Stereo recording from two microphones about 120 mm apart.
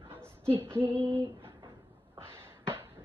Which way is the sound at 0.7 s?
45° right (ahead or behind).